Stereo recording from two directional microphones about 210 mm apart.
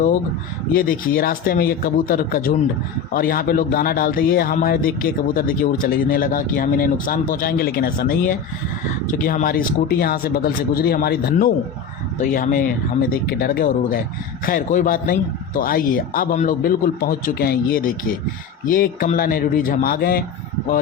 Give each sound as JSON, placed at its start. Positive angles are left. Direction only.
{"t": 0.7, "sound": "a man's voice", "side_deg": 45}